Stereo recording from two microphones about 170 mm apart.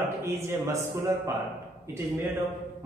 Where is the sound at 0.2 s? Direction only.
15° right (ahead or behind).